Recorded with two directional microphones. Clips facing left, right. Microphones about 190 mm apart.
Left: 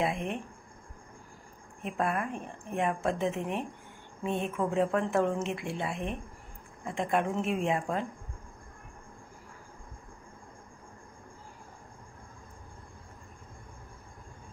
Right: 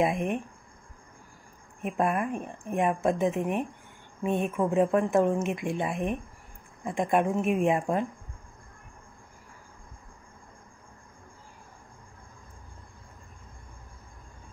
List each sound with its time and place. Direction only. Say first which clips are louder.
0.0 s speech: right 5 dB; 15° right (ahead or behind)
1.8 s speech: right 4 dB; 15° right (ahead or behind)